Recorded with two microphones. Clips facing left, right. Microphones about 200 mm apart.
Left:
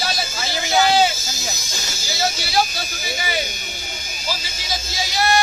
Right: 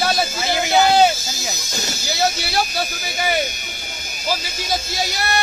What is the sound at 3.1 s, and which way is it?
Speech, 55° right (ahead or behind).